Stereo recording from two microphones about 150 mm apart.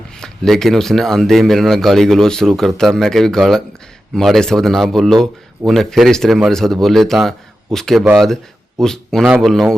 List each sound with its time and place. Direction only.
0.2 s speech: centre (ahead or behind)